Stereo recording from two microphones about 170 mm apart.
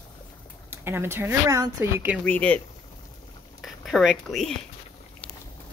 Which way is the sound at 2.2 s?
5° left (ahead or behind).